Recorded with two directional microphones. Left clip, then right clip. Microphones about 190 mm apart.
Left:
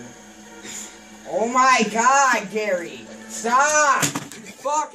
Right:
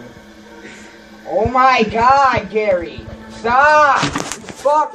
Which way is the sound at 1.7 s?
25° left (ahead or behind).